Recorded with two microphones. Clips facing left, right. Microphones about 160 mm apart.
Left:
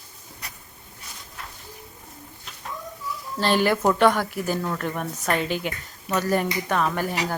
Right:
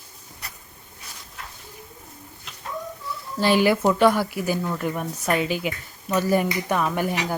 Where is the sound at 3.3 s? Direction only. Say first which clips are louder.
Right 2 dB; 10° right (ahead or behind).